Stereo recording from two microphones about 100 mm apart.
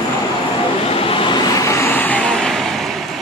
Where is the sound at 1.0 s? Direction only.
60° left (ahead or behind).